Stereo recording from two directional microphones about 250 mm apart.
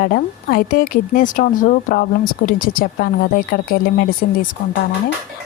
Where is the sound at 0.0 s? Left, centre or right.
Left.